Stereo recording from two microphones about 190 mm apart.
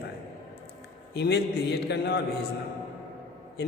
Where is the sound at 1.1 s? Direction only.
60° left (ahead or behind).